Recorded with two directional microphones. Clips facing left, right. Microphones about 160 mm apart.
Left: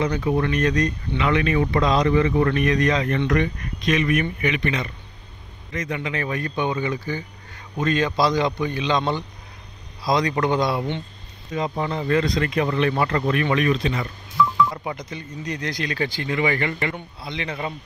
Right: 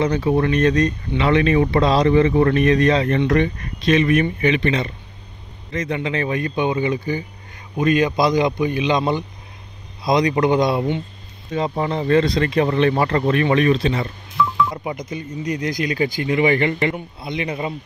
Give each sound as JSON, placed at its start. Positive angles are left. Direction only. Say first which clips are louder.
{"t": 0.0, "sound": "speech", "louder": "right 4 dB", "side_deg": -30}
{"t": 11.5, "sound": "speech", "louder": "right 4 dB", "side_deg": -30}
{"t": 14.7, "sound": "speech", "louder": "right 3 dB", "side_deg": -15}